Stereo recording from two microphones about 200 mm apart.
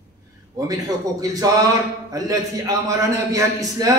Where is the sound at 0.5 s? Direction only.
15° right (ahead or behind).